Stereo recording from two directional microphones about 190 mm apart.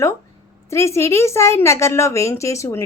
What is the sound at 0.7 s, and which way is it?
A woman's voice, 15° left (ahead or behind).